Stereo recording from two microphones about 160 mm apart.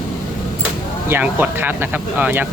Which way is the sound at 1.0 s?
10° right (ahead or behind).